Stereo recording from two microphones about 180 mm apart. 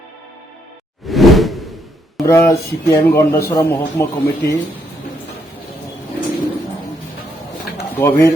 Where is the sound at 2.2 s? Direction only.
15° left (ahead or behind).